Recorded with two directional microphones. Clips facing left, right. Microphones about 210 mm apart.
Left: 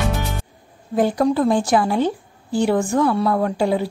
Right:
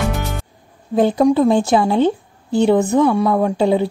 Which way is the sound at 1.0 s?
25° right (ahead or behind).